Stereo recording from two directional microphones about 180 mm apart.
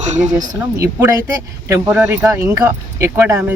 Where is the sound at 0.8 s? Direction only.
15° right (ahead or behind).